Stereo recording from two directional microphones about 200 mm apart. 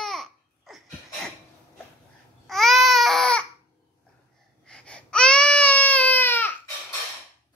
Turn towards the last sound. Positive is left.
turn(degrees=10)  # may be behind; listen again after turning